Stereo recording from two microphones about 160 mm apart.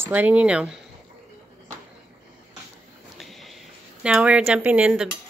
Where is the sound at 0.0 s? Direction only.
10° right (ahead or behind).